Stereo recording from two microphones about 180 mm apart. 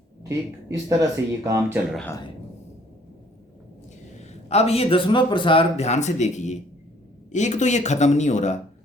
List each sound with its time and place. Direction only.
0.2 s speech: 20° right (ahead or behind)
4.2 s a man's voice: 35° left (ahead or behind)